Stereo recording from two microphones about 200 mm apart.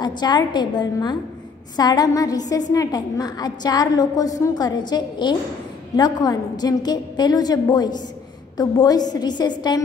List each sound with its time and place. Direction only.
0.0 s a woman's voice: 20° left (ahead or behind)